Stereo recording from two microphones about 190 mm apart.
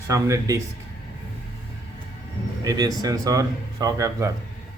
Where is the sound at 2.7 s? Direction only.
20° right (ahead or behind).